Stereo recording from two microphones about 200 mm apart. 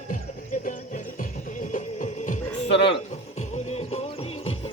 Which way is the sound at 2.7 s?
60° left (ahead or behind).